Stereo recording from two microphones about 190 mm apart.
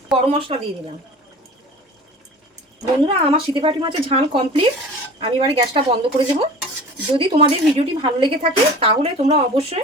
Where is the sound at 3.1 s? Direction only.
30° right (ahead or behind).